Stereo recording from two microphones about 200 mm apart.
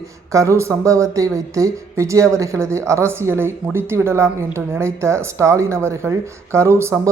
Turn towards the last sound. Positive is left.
turn(degrees=-15)  # may be behind; listen again after turning